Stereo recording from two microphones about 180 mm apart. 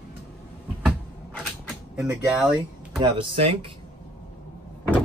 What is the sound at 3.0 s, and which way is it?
Speech, 30° right (ahead or behind).